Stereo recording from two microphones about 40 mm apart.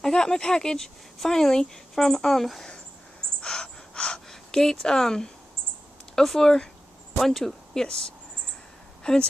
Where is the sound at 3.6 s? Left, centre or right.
Left.